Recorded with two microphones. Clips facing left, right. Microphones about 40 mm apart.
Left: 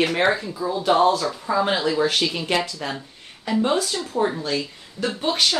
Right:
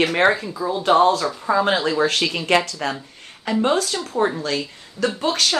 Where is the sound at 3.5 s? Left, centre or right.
Right.